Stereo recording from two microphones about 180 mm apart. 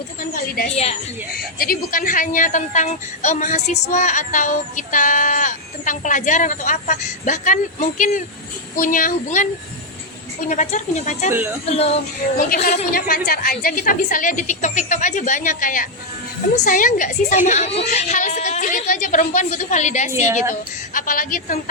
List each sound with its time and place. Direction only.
0.3 s speech: 55° left (ahead or behind)
10.5 s speech: 45° left (ahead or behind)
11.6 s music: 35° left (ahead or behind)
12.4 s speech: 50° left (ahead or behind)
20.1 s a woman's voice: 15° right (ahead or behind)
20.5 s speech: 50° left (ahead or behind)